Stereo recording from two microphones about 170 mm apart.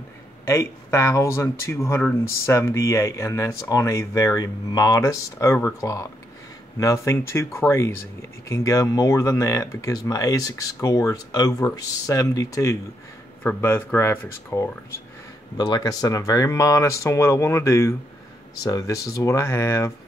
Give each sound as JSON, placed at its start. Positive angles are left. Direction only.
{"t": 0.5, "sound": "speech", "side_deg": 15}